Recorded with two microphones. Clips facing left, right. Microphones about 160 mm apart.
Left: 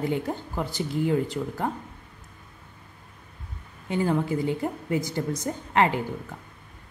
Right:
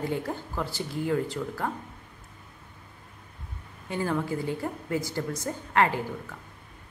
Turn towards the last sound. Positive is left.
turn(degrees=20)  # may be behind; listen again after turning